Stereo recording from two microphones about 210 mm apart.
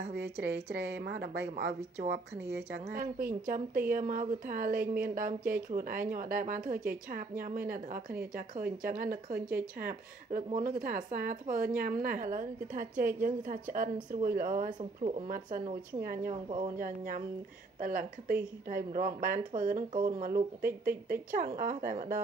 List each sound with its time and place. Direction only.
0.7 s a woman's voice: 55° right (ahead or behind); by 21.9 s 40° right (ahead or behind)